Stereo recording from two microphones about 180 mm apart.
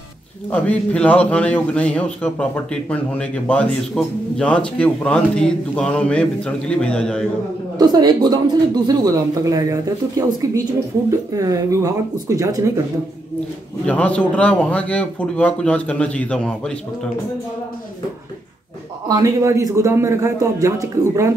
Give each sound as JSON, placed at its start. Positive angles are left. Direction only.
{"t": 0.5, "sound": "a man's voice", "side_deg": 10}
{"t": 7.8, "sound": "speech", "side_deg": -20}
{"t": 13.8, "sound": "a man's voice", "side_deg": 5}
{"t": 19.0, "sound": "a man's voice", "side_deg": -20}